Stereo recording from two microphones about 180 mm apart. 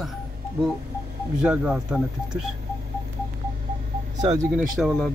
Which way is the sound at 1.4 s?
5° right (ahead or behind).